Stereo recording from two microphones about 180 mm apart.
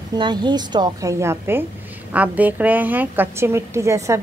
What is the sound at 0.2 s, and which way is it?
Speech, 25° right (ahead or behind).